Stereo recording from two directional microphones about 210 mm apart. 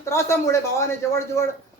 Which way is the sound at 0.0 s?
15° left (ahead or behind).